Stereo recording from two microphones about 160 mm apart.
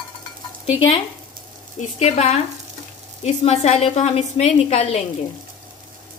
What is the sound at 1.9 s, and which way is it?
Speech, 45° left (ahead or behind).